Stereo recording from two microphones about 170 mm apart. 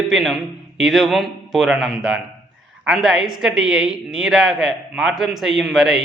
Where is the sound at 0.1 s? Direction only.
Centre (ahead or behind).